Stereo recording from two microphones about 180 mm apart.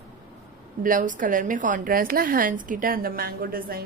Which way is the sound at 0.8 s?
45° right (ahead or behind).